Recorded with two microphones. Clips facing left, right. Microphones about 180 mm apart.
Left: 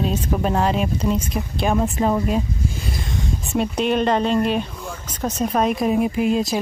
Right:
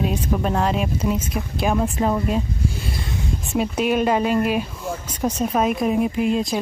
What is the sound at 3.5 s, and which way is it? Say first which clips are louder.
Speech: even; 5° right (ahead or behind).